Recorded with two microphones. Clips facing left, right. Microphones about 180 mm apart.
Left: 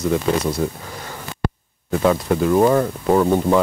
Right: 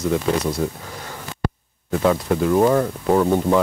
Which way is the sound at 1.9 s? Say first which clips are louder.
Left 1 dB; 15° left (ahead or behind).